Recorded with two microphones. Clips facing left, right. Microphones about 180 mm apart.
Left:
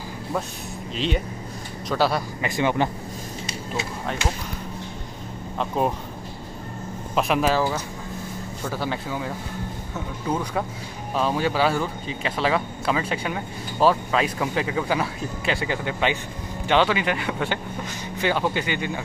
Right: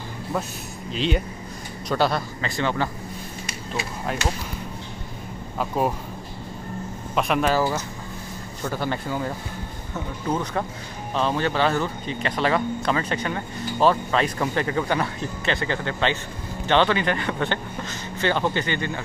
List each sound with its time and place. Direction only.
0.9 s speech: centre (ahead or behind)
2.4 s speech: 15° left (ahead or behind)
5.6 s speech: 5° right (ahead or behind)
7.2 s speech: centre (ahead or behind)